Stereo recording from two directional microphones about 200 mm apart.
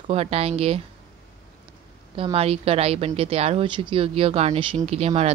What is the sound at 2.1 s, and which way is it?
Speech, 30° right (ahead or behind).